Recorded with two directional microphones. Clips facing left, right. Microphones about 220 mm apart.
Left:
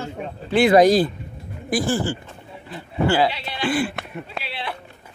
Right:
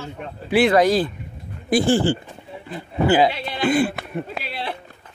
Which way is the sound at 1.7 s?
25° right (ahead or behind).